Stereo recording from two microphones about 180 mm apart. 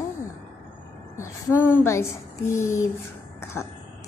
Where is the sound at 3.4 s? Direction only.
15° left (ahead or behind).